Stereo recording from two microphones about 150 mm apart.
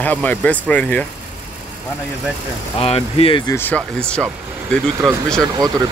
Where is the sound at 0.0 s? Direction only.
10° left (ahead or behind).